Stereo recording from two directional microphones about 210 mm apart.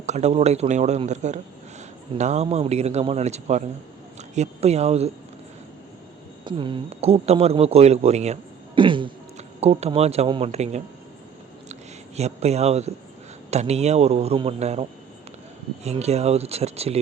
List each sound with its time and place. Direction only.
0.0 s a man's voice: 30° right (ahead or behind)
6.4 s a man's voice: 25° right (ahead or behind)